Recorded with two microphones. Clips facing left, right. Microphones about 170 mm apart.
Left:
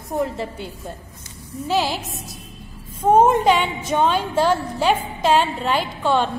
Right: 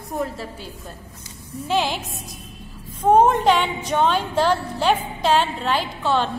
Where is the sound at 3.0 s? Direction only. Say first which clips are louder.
Left 1 dB; 10° left (ahead or behind).